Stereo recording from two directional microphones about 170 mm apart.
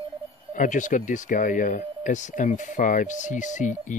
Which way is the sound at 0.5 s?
50° left (ahead or behind).